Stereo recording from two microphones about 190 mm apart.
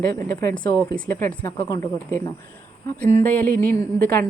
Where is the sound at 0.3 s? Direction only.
10° left (ahead or behind).